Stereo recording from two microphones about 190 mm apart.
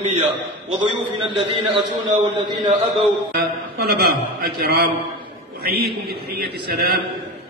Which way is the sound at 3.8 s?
60° right (ahead or behind).